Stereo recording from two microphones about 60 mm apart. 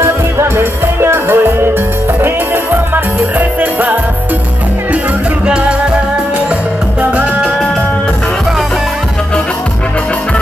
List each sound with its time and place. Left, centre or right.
0.0 s music: right
7.0 s music: right